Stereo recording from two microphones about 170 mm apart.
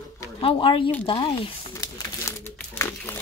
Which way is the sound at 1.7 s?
20° left (ahead or behind).